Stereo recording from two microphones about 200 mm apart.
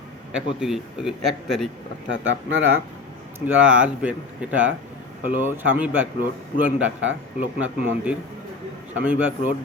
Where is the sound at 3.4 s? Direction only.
10° right (ahead or behind).